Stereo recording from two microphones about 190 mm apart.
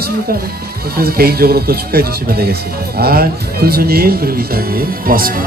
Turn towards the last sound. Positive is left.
turn(degrees=-50)  # may be behind; listen again after turning